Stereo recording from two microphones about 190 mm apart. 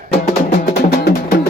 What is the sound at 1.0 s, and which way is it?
Music, 50° left (ahead or behind).